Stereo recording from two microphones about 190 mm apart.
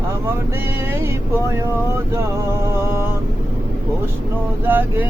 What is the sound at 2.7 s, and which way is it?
Mantra, 10° right (ahead or behind).